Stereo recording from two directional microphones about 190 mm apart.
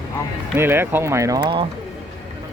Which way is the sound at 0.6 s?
10° right (ahead or behind).